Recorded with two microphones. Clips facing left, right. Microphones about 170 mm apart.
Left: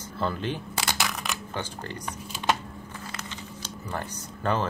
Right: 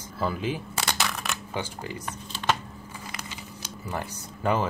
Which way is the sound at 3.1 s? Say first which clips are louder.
Left 1 dB; 10° right (ahead or behind).